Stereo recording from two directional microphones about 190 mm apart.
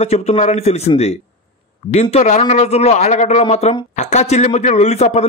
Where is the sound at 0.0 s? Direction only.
35° left (ahead or behind).